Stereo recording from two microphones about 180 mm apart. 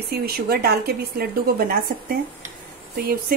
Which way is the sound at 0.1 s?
60° right (ahead or behind).